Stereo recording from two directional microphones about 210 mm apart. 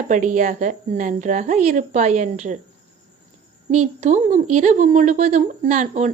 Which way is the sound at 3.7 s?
35° right (ahead or behind).